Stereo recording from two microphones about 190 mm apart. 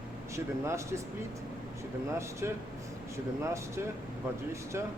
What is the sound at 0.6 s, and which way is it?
Speech, 15° right (ahead or behind).